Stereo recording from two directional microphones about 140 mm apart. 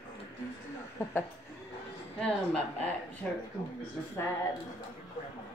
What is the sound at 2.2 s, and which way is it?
Speech, 10° left (ahead or behind).